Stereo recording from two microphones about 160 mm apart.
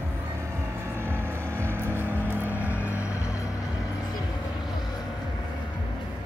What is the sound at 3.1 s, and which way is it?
Vehicle, 20° left (ahead or behind).